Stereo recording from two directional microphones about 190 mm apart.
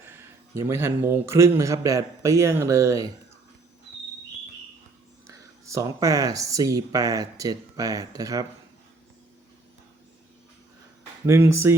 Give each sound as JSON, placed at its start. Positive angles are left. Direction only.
{"t": 0.5, "sound": "a man's voice", "side_deg": -15}
{"t": 5.3, "sound": "speech", "side_deg": -15}
{"t": 11.3, "sound": "a man's voice", "side_deg": -15}